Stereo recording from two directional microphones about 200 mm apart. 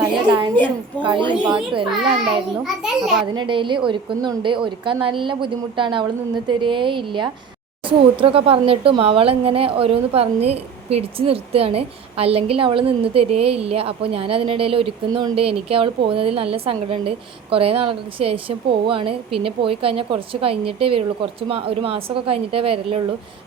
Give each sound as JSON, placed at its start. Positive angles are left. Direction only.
{"t": 0.3, "sound": "speech", "side_deg": -20}
{"t": 2.6, "sound": "a child's voice", "side_deg": 0}
{"t": 3.3, "sound": "speech", "side_deg": -25}